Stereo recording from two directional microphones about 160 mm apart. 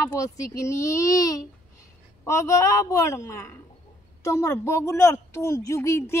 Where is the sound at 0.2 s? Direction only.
20° left (ahead or behind).